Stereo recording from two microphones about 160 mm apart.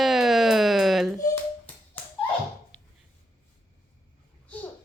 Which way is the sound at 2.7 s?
5° left (ahead or behind).